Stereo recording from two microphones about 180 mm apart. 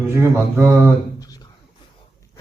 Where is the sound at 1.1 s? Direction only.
20° left (ahead or behind).